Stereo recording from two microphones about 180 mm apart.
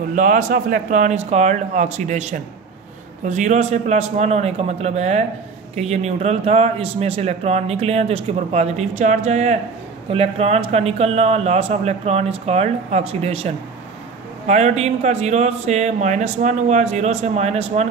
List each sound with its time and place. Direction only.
0.1 s a man's voice: 45° right (ahead or behind)
14.5 s a man's voice: 40° right (ahead or behind)